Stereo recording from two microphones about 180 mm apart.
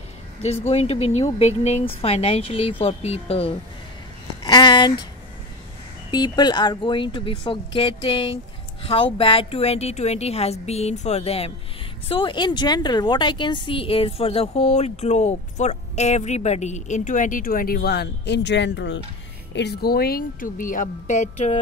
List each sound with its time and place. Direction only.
0.4 s a woman's voice: 35° left (ahead or behind)
4.4 s a sound: 25° left (ahead or behind)
6.1 s a woman's voice: 25° left (ahead or behind)